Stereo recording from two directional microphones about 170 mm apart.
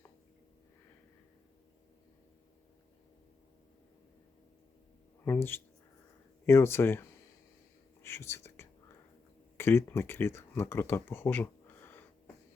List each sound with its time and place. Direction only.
5.2 s speech: 10° left (ahead or behind)